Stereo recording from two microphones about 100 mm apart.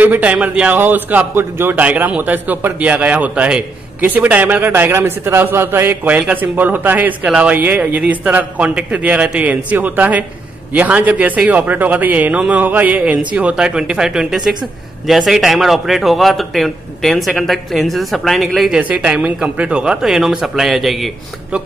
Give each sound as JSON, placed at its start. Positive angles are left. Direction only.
{"t": 0.0, "sound": "a man's voice", "side_deg": -15}
{"t": 18.8, "sound": "a man's voice", "side_deg": -15}